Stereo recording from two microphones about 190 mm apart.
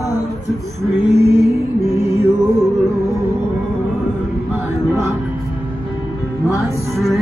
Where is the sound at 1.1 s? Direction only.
15° right (ahead or behind).